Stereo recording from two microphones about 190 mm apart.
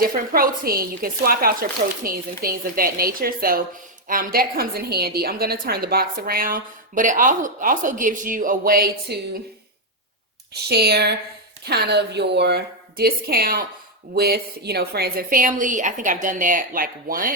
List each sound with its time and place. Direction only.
0.0 s a woman's voice: 50° right (ahead or behind)
10.5 s a woman's voice: 60° right (ahead or behind)